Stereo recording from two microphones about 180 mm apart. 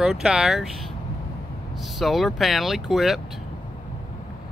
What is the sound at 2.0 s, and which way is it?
Speech, centre (ahead or behind).